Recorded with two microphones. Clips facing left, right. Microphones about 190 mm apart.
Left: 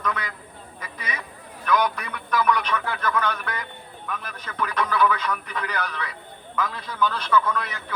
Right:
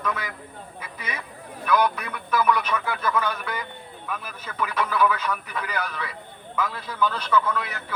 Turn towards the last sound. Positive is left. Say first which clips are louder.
# left 1 dB
turn(degrees=-5)  # may be behind; listen again after turning